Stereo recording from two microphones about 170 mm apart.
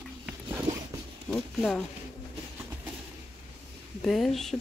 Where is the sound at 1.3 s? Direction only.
5° left (ahead or behind).